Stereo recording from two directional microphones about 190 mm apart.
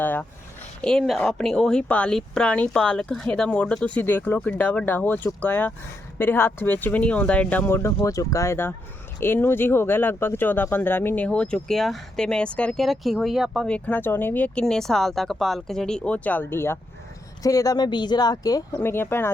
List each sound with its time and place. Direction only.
0.0 s speech: 10° left (ahead or behind)